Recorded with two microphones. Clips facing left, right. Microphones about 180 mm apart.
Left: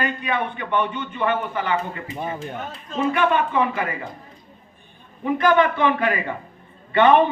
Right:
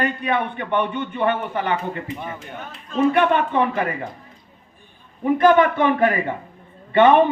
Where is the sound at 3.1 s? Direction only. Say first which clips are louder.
Right 2 dB; 55° right (ahead or behind).